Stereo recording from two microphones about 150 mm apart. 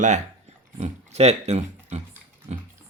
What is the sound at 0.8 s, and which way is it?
Speech, 50° right (ahead or behind).